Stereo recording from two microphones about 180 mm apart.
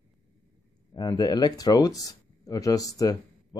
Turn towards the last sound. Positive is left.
turn(degrees=20)  # may be behind; listen again after turning